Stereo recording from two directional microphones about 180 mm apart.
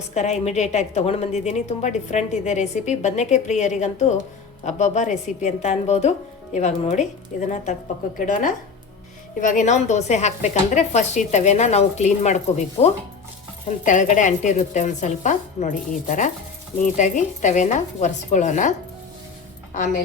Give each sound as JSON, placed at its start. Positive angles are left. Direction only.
{"t": 0.1, "sound": "a woman's voice", "side_deg": 40}